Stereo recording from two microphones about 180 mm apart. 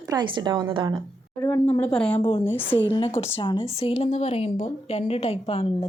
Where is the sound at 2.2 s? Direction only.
35° left (ahead or behind).